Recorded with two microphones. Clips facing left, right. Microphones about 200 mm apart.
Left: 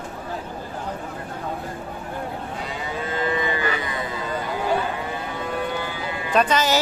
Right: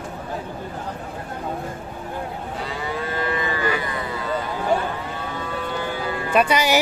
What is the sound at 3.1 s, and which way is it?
Livestock, 20° left (ahead or behind).